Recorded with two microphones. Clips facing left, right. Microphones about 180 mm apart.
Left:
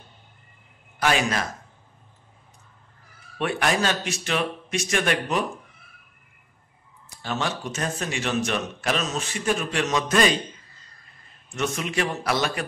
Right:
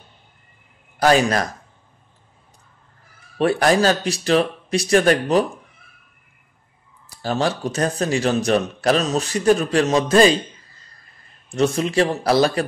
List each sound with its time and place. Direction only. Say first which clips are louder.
0.9 s speech: right 7 dB; 40° right (ahead or behind)
3.3 s speech: right 8 dB; 35° right (ahead or behind)
7.2 s speech: right 7 dB; 35° right (ahead or behind)
11.4 s speech: right 8 dB; 30° right (ahead or behind)